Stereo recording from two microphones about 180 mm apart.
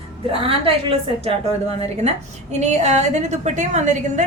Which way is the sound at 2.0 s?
40° right (ahead or behind).